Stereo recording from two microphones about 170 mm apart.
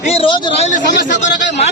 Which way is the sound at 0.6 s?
45° left (ahead or behind).